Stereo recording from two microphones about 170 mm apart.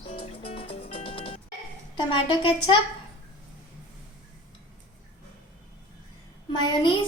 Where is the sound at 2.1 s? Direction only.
30° left (ahead or behind).